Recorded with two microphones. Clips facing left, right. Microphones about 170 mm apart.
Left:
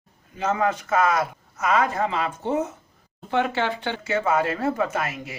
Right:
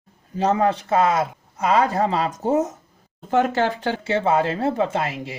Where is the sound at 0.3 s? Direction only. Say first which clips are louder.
Right 4 dB; 35° right (ahead or behind).